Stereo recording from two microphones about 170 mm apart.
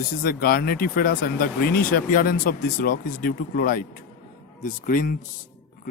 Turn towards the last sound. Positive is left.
turn(degrees=55)  # may be behind; listen again after turning